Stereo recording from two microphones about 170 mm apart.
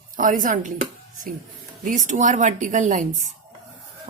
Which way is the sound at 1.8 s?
45° right (ahead or behind).